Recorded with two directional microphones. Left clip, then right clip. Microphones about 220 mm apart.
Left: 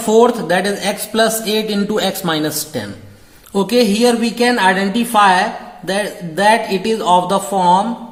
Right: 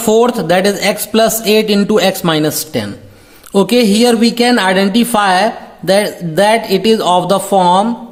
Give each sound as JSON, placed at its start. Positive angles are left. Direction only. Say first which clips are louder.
{"t": 0.0, "sound": "speech", "louder": "right 1 dB", "side_deg": -40}